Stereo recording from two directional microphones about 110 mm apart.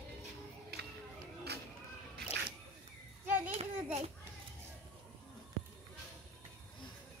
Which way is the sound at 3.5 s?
75° right (ahead or behind).